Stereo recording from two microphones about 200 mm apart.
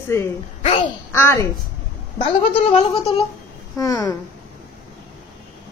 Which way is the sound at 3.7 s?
15° left (ahead or behind).